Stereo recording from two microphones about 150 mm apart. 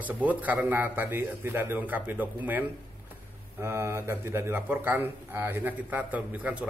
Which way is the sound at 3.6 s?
15° right (ahead or behind).